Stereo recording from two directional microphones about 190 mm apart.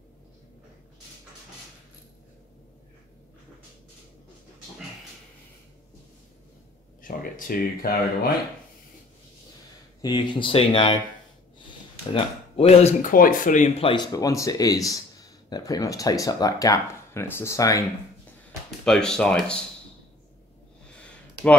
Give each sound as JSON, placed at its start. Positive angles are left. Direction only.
{"t": 7.0, "sound": "speech", "side_deg": 45}
{"t": 10.0, "sound": "speech", "side_deg": 25}
{"t": 12.1, "sound": "speech", "side_deg": 30}
{"t": 13.1, "sound": "speech", "side_deg": 45}
{"t": 18.9, "sound": "speech", "side_deg": 5}